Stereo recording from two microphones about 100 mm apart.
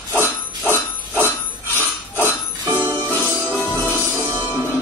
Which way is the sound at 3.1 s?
20° left (ahead or behind).